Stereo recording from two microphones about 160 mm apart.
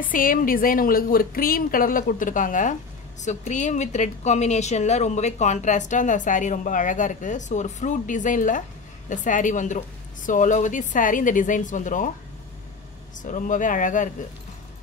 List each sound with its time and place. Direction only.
0.0 s a woman's voice: 60° left (ahead or behind)
13.2 s a woman's voice: 55° left (ahead or behind)